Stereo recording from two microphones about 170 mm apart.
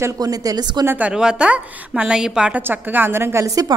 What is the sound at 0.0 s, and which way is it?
Speech, 20° right (ahead or behind).